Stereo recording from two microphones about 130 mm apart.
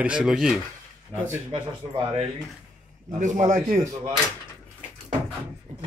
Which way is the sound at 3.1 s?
70° right (ahead or behind).